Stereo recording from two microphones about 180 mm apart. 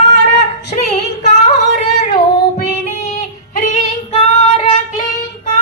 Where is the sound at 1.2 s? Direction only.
40° left (ahead or behind).